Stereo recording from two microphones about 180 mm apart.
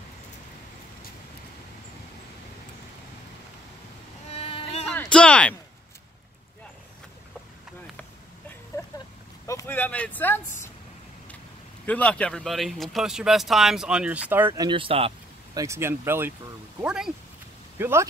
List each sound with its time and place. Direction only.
4.3 s a sound: 35° left (ahead or behind)
4.8 s speech: 5° left (ahead or behind)
8.8 s a sound: 20° left (ahead or behind)
9.5 s speech: 15° left (ahead or behind)
11.8 s speech: 10° left (ahead or behind); by 15.1 s 30° right (ahead or behind)
15.5 s speech: 15° right (ahead or behind)